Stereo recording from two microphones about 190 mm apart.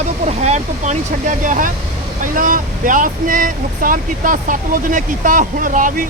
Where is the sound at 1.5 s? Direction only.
45° right (ahead or behind).